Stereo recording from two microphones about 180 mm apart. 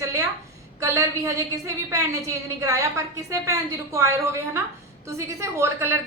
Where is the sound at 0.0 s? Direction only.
15° right (ahead or behind).